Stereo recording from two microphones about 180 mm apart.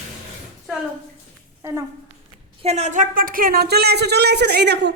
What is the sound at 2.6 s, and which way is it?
Speech, 35° right (ahead or behind).